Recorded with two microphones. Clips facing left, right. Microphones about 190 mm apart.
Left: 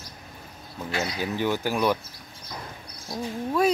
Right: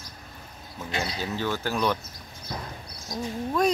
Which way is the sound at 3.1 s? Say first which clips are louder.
Left 1 dB; 30° left (ahead or behind).